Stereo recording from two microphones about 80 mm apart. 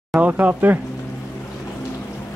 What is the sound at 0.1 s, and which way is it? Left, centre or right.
Speech, centre.